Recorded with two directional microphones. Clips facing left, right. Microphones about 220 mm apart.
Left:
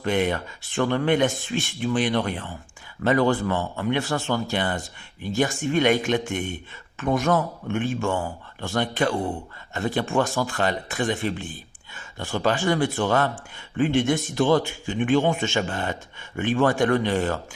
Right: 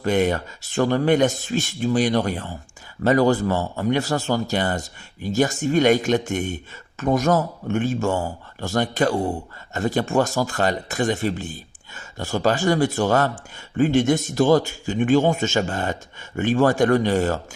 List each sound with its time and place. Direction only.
0.0 s speech: 40° right (ahead or behind)